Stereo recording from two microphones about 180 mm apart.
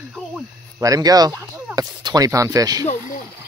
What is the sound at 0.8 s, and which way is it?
Speech, 20° right (ahead or behind).